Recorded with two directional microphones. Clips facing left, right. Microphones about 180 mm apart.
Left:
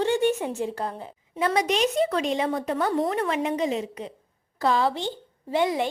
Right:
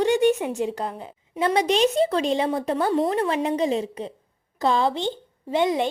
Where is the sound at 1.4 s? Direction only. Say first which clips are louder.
Right 3 dB; 30° right (ahead or behind).